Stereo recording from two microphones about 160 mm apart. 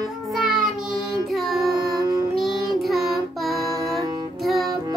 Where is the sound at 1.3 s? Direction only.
Centre (ahead or behind).